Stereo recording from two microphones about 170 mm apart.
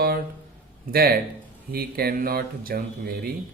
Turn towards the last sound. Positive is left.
turn(degrees=-65)  # may be behind; listen again after turning